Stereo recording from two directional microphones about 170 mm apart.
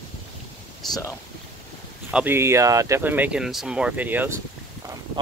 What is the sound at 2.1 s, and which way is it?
Speech, 10° right (ahead or behind).